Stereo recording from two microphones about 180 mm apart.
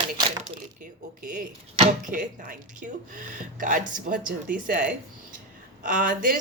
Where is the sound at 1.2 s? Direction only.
45° right (ahead or behind).